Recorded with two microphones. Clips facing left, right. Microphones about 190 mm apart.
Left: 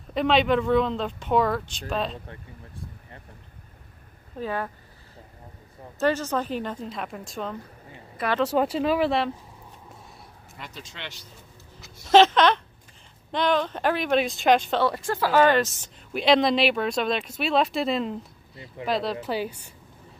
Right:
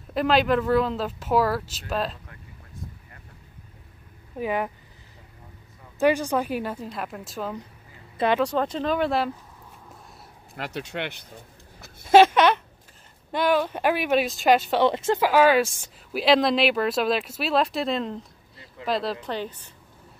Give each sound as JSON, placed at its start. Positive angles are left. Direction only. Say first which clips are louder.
{"t": 0.1, "sound": "speech", "louder": "even", "side_deg": 0}
{"t": 4.4, "sound": "a woman's voice", "louder": "right 3 dB", "side_deg": -15}
{"t": 5.9, "sound": "a woman's voice", "louder": "right 3 dB", "side_deg": -15}
{"t": 10.5, "sound": "speech", "louder": "right 11 dB", "side_deg": -65}
{"t": 12.1, "sound": "a woman's voice", "louder": "right 1 dB", "side_deg": -10}
{"t": 14.8, "sound": "speech", "louder": "right 4 dB", "side_deg": -20}
{"t": 15.1, "sound": "a woman's voice", "louder": "even", "side_deg": -10}